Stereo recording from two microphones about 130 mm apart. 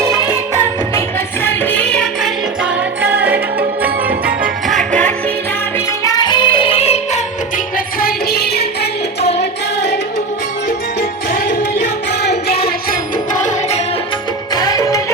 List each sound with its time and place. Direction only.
1.6 s music: 10° left (ahead or behind)
3.0 s music: 15° right (ahead or behind)
4.7 s music: 5° left (ahead or behind)
6.1 s music: 35° left (ahead or behind); by 7.2 s 55° left (ahead or behind)
12.9 s music: 75° left (ahead or behind)
14.5 s music: 30° left (ahead or behind)